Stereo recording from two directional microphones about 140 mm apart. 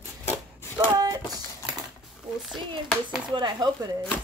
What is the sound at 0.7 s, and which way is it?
Speech, 25° right (ahead or behind).